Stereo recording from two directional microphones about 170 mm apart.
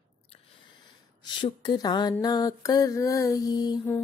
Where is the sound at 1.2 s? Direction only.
25° left (ahead or behind).